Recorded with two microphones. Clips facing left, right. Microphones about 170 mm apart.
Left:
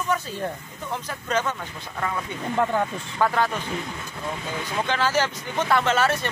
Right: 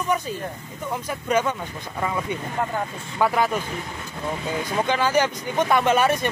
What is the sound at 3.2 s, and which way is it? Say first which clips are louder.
Speech: right 2 dB; 10° right (ahead or behind).